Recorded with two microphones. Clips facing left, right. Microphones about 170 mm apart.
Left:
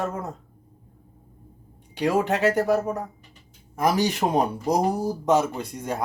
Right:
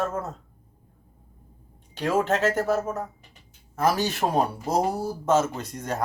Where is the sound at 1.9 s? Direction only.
15° left (ahead or behind).